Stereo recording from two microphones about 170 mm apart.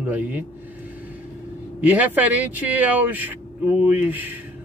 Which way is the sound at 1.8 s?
10° right (ahead or behind).